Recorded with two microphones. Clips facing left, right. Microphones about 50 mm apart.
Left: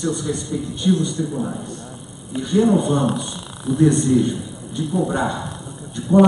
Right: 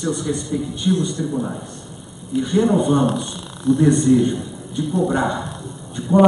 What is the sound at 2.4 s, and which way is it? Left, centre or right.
Speech, centre.